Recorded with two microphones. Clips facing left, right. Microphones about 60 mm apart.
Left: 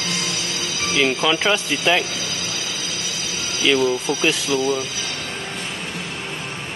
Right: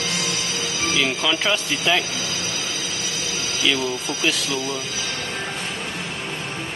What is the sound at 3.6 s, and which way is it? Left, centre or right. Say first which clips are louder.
Speech: left 5 dB; left.